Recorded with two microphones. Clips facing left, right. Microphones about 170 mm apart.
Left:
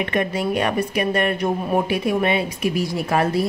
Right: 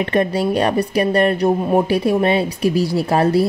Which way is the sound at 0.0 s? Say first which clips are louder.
Right 5 dB; 35° right (ahead or behind).